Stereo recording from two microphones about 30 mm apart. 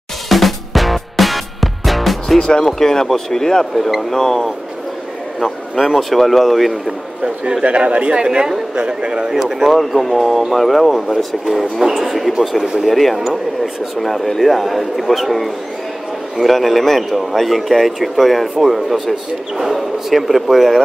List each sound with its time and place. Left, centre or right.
0.3 s music: centre
2.3 s speech: left
5.9 s a man's voice: centre
7.6 s speech: right
9.3 s a man's voice: centre
11.8 s speech: centre
12.1 s a man's voice: centre